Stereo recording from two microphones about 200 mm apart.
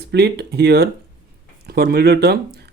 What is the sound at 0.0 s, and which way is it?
Speech, 55° right (ahead or behind).